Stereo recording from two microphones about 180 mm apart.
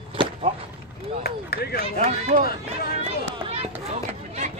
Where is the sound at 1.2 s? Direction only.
60° left (ahead or behind).